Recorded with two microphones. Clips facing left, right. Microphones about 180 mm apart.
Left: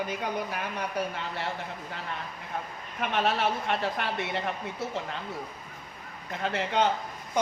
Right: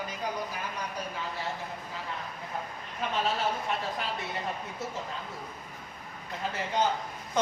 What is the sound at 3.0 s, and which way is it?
A woman's voice, 70° left (ahead or behind).